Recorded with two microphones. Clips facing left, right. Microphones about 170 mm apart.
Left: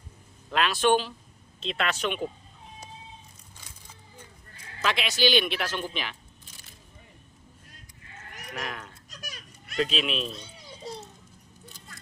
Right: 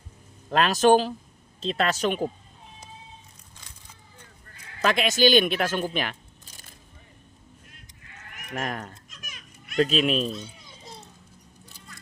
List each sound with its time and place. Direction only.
0.5 s a man's voice: 40° right (ahead or behind)
4.8 s speech: 45° right (ahead or behind)
8.5 s a man's voice: 40° right (ahead or behind)
9.0 s children playing: 40° left (ahead or behind)
9.7 s speech: 45° right (ahead or behind)